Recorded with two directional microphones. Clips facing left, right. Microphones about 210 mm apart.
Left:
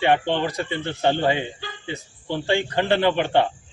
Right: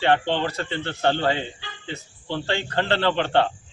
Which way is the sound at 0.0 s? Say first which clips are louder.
Left 1 dB; 15° left (ahead or behind).